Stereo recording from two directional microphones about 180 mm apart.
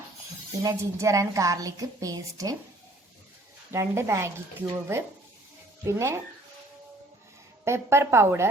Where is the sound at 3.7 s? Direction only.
15° right (ahead or behind).